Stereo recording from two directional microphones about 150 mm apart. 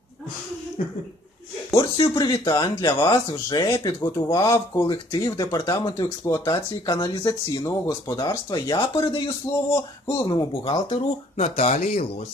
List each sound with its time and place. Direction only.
0.8 s speech: 55° left (ahead or behind)
1.7 s speech: 25° left (ahead or behind)
2.9 s speech: 35° left (ahead or behind); by 12.1 s 55° left (ahead or behind)